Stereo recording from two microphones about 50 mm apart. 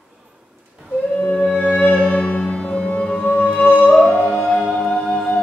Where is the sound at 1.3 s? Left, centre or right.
Centre.